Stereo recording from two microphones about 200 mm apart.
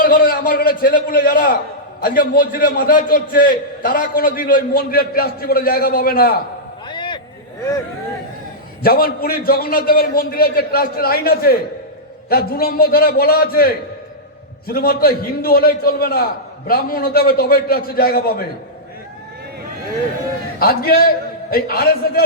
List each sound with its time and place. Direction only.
0.0 s a man's voice: 45° left (ahead or behind)
6.8 s a sound: 20° left (ahead or behind)
8.8 s a man's voice: 50° left (ahead or behind)
20.6 s a man's voice: 50° left (ahead or behind)